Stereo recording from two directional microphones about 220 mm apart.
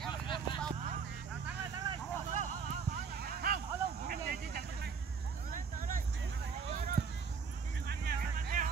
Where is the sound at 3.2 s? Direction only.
40° right (ahead or behind).